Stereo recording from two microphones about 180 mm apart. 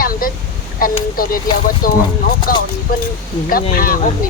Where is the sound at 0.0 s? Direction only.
50° left (ahead or behind).